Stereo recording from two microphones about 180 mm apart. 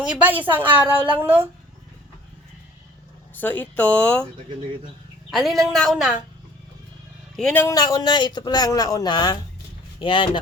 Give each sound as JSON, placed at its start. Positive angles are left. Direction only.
{"t": 0.0, "sound": "a woman's voice", "side_deg": -5}
{"t": 3.3, "sound": "speech", "side_deg": 10}
{"t": 5.3, "sound": "a woman's voice", "side_deg": 0}
{"t": 7.3, "sound": "a man's voice", "side_deg": 5}